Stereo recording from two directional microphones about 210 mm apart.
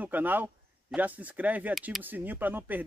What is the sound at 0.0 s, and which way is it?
Speech, 10° right (ahead or behind).